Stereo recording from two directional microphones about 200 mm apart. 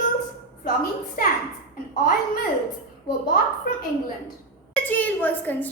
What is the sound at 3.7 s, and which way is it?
Speech, 45° left (ahead or behind).